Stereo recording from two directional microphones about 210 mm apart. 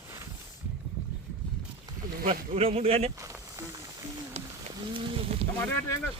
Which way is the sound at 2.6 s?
30° right (ahead or behind).